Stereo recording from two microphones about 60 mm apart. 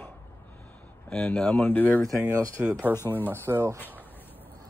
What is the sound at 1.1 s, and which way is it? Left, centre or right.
Speech, left.